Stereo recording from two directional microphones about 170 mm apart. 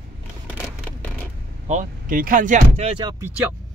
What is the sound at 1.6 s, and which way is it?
Speech, 50° right (ahead or behind).